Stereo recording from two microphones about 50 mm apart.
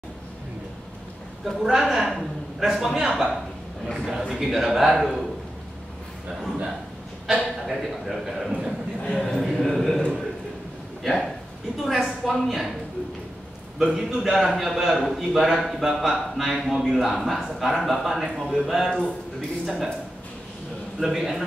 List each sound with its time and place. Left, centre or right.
1.4 s a woman's voice: centre
7.2 s a man's voice: centre
9.0 s a man's voice: centre
11.1 s a man's voice: centre
13.9 s a man's voice: centre
21.0 s a man's voice: centre